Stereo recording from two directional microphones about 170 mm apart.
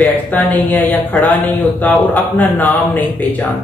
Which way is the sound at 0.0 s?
10° left (ahead or behind).